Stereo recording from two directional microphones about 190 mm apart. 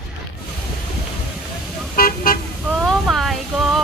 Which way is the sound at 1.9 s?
50° left (ahead or behind).